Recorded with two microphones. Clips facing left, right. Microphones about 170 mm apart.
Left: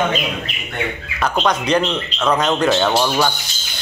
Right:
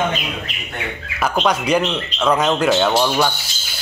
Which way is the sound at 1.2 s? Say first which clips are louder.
Even; 10° right (ahead or behind).